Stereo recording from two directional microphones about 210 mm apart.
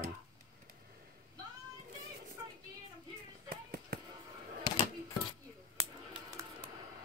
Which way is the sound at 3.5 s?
50° right (ahead or behind).